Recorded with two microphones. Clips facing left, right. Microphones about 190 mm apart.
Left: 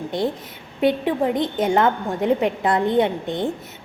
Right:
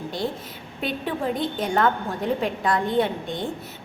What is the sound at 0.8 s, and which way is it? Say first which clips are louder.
A woman's voice: left 8 dB; 20° left (ahead or behind).